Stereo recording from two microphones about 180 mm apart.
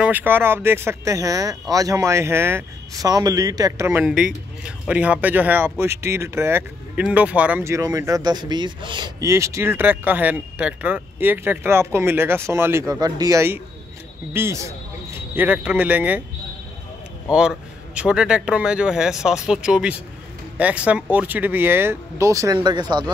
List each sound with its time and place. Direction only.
0.0 s speech: 10° right (ahead or behind)
4.0 s speech: 5° right (ahead or behind)
17.3 s a man's voice: 5° right (ahead or behind); by 23.1 s 25° right (ahead or behind)